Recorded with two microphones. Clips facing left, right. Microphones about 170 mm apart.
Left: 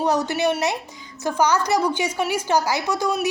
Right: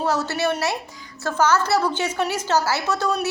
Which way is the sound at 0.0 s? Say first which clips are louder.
Left 2 dB; 15° left (ahead or behind).